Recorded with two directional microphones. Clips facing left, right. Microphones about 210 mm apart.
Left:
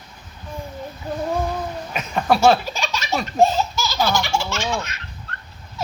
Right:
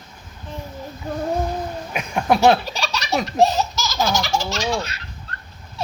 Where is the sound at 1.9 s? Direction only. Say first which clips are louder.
Even; 15° right (ahead or behind).